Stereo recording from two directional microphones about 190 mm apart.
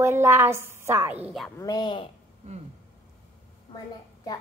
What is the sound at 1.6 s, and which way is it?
Speech, 20° left (ahead or behind).